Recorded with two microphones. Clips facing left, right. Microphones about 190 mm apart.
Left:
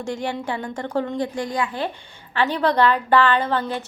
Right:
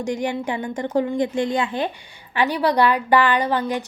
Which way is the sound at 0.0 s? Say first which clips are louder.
Right 3 dB; 15° right (ahead or behind).